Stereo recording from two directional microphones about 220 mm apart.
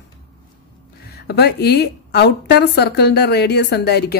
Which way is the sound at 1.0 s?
45° left (ahead or behind).